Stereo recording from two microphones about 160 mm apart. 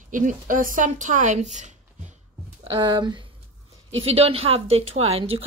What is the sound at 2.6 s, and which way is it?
A woman's voice, 35° right (ahead or behind).